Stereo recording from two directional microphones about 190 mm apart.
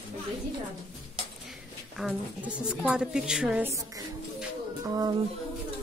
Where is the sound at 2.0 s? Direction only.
5° right (ahead or behind).